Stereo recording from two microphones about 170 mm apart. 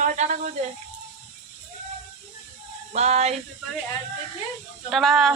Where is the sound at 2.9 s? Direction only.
40° right (ahead or behind).